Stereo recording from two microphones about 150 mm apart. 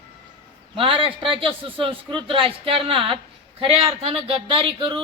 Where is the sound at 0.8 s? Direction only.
35° right (ahead or behind).